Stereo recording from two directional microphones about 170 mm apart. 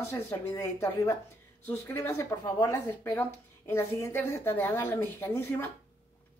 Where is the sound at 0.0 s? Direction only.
15° left (ahead or behind).